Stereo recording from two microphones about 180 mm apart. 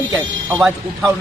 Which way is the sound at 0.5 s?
Centre (ahead or behind).